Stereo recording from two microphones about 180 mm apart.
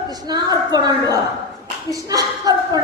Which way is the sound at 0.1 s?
20° right (ahead or behind).